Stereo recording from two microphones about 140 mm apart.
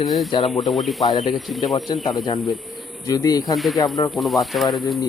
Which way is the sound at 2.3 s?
30° left (ahead or behind).